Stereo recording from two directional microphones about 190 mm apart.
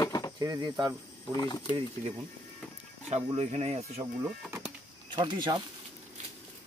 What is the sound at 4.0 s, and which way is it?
Speech, 15° right (ahead or behind).